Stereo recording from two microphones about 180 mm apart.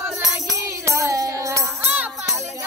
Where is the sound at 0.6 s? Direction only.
15° right (ahead or behind).